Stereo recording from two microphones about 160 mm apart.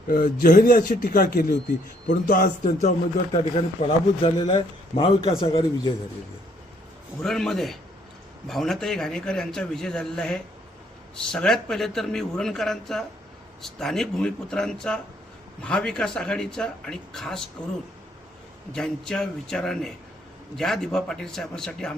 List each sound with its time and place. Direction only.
0.1 s a man's voice: 55° left (ahead or behind)
3.4 s a man's voice: 30° left (ahead or behind)
7.2 s a man's voice: centre (ahead or behind)
18.7 s a man's voice: 5° left (ahead or behind)